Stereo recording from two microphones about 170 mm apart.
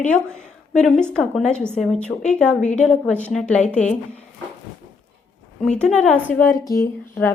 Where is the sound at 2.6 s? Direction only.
45° left (ahead or behind).